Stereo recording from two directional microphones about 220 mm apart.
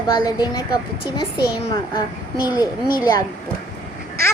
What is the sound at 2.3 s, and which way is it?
Speech, 20° left (ahead or behind).